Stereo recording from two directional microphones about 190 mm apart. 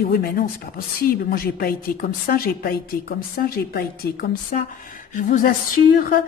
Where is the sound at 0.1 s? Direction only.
55° left (ahead or behind).